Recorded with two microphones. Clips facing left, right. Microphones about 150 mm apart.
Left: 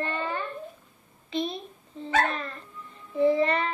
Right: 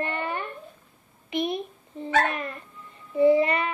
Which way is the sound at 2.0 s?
10° right (ahead or behind).